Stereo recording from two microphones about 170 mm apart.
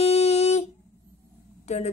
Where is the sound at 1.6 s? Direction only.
40° left (ahead or behind).